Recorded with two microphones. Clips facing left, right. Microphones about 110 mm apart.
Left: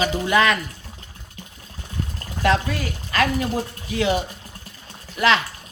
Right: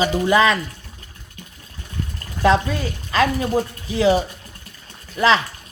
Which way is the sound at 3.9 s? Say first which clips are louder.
Right 5 dB; 35° right (ahead or behind).